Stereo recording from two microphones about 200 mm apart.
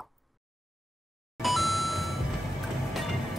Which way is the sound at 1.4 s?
Centre (ahead or behind).